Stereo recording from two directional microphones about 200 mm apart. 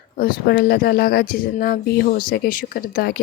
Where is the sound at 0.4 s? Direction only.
50° left (ahead or behind).